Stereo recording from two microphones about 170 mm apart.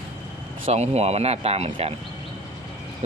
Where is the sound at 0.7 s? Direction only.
40° right (ahead or behind).